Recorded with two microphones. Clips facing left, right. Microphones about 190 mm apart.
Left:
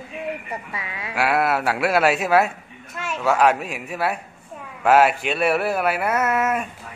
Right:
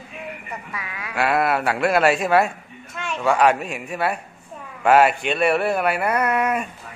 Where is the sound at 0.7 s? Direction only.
25° left (ahead or behind).